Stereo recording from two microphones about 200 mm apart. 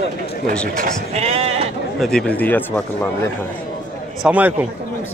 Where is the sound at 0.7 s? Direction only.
35° right (ahead or behind).